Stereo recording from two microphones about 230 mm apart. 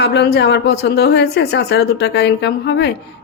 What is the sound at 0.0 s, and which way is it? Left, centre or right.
Speech, left.